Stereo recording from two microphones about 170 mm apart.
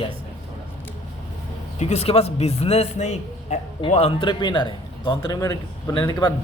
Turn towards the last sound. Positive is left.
turn(degrees=25)  # may be behind; listen again after turning